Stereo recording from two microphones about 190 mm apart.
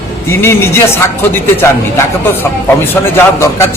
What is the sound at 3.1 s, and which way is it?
Speech, 15° left (ahead or behind).